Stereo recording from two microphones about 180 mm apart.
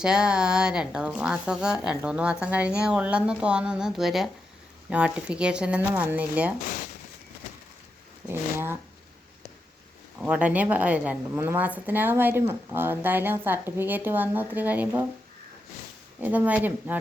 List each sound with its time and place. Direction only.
0.0 s a woman's voice: 5° right (ahead or behind)
8.5 s a woman's voice: 15° right (ahead or behind)
10.2 s a woman's voice: 5° right (ahead or behind)
16.2 s a woman's voice: 10° right (ahead or behind)